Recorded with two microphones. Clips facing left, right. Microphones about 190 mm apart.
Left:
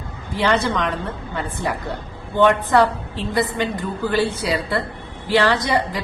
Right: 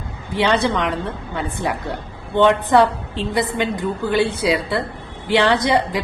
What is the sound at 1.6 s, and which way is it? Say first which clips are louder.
A woman's voice: right 1 dB; 20° right (ahead or behind).